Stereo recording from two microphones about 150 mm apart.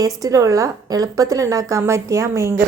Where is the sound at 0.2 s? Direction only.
20° right (ahead or behind).